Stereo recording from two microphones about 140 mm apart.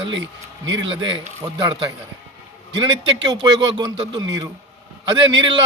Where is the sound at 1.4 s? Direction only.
30° right (ahead or behind).